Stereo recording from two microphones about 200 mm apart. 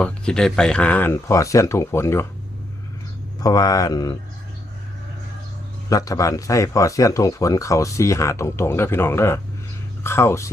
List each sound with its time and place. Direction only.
0.0 s speech: 5° left (ahead or behind)
3.4 s speech: 20° left (ahead or behind)
5.9 s speech: 15° left (ahead or behind)